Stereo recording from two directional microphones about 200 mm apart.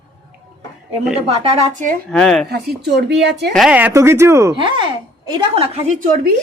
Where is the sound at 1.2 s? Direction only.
30° right (ahead or behind).